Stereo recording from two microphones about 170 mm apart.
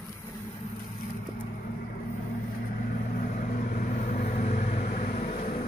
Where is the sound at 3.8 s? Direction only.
50° left (ahead or behind).